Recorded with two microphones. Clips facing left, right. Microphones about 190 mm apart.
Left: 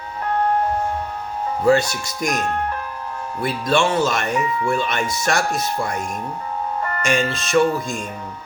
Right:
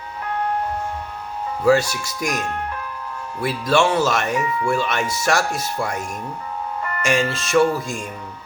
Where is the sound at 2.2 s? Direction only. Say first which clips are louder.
Left 3 dB; 50° left (ahead or behind).